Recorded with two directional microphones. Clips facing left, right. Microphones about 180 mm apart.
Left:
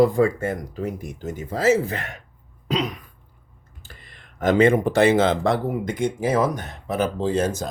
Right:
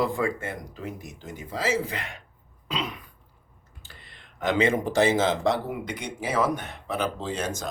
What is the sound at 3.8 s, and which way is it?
Speech, 45° left (ahead or behind).